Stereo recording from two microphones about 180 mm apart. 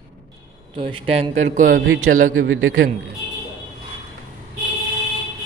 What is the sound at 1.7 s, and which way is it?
A man's voice, 90° right.